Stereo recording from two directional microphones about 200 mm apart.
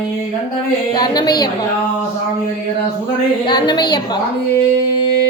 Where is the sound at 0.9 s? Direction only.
20° left (ahead or behind).